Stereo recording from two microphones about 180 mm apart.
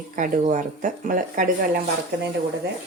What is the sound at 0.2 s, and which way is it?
Speech, 45° right (ahead or behind).